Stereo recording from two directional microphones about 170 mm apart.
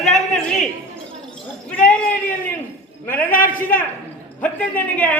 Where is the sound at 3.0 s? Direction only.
10° left (ahead or behind).